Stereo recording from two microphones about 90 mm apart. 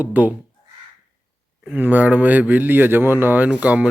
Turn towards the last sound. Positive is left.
turn(degrees=-15)  # may be behind; listen again after turning